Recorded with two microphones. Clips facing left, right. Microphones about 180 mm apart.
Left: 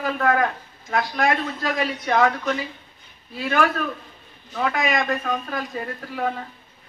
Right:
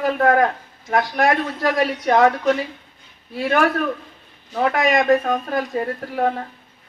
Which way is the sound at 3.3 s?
60° right (ahead or behind).